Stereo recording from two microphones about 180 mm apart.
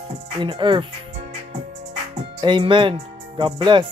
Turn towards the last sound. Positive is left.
turn(degrees=-25)  # may be behind; listen again after turning